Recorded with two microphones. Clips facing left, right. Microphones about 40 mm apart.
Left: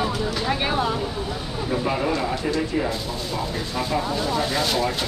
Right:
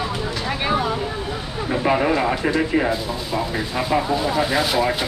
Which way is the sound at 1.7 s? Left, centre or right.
Right.